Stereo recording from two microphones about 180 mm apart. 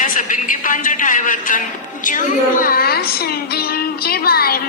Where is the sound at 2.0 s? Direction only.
50° left (ahead or behind).